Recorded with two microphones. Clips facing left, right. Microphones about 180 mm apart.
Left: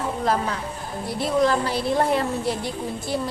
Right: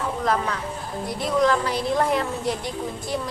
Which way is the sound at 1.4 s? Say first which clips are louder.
Even; 30° left (ahead or behind).